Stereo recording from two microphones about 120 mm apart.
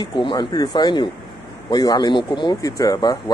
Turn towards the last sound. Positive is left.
turn(degrees=35)  # may be behind; listen again after turning